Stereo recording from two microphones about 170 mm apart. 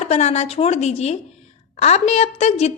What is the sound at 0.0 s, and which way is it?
A woman's voice, 40° left (ahead or behind).